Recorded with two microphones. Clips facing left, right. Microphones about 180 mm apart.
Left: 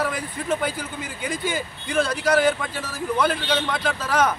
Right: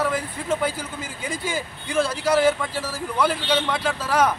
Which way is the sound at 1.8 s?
5° right (ahead or behind).